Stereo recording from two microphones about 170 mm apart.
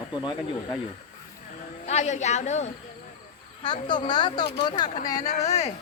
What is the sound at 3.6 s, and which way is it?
Speech, 25° left (ahead or behind).